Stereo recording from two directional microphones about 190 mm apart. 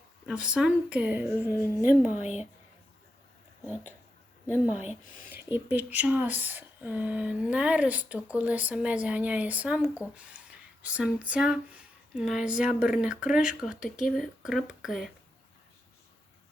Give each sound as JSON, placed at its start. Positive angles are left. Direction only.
{"t": 0.3, "sound": "speech", "side_deg": -5}
{"t": 2.2, "sound": "speech", "side_deg": 35}
{"t": 4.4, "sound": "a woman's voice", "side_deg": -10}